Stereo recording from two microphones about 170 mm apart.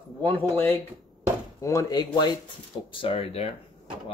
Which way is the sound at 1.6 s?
20° left (ahead or behind).